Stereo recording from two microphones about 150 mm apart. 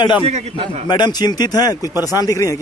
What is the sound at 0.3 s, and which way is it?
Speech, 50° right (ahead or behind).